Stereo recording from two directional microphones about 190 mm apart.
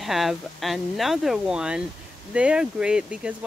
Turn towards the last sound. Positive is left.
turn(degrees=-5)  # may be behind; listen again after turning